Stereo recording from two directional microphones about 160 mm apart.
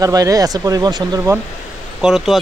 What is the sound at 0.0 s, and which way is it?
Speech, 20° right (ahead or behind).